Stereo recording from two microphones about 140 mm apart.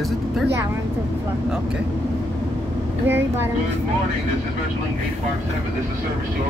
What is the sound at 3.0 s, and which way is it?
Speech, 15° right (ahead or behind).